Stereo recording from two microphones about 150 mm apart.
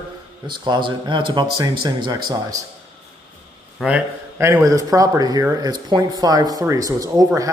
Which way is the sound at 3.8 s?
15° right (ahead or behind).